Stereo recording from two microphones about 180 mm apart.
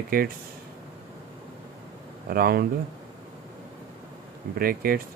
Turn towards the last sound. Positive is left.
turn(degrees=-55)  # may be behind; listen again after turning